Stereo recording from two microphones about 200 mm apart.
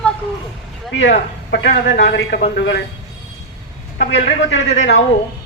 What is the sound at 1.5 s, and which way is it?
A man's voice, 60° left (ahead or behind).